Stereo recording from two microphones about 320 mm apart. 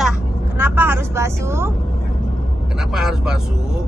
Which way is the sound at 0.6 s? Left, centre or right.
Centre.